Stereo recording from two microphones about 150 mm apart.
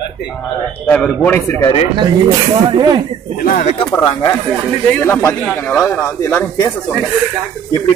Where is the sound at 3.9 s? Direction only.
15° left (ahead or behind).